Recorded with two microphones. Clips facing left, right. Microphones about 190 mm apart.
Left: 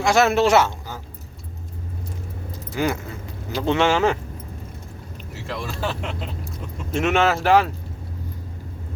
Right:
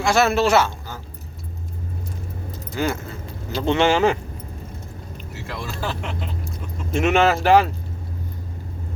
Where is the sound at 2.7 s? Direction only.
15° left (ahead or behind).